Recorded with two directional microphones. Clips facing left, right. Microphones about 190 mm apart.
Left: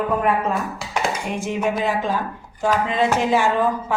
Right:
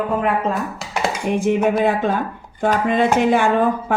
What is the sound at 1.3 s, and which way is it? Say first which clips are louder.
Speech: right 9 dB; 55° right (ahead or behind).